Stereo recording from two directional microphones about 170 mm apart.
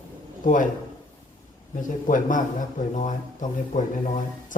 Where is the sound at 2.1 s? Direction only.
50° left (ahead or behind).